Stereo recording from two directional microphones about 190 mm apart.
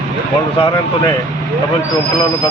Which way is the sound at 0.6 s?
20° left (ahead or behind).